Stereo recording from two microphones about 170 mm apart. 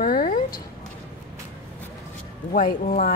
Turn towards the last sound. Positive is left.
turn(degrees=55)  # may be behind; listen again after turning